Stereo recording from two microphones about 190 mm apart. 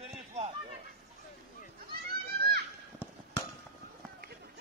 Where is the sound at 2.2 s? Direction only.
55° right (ahead or behind).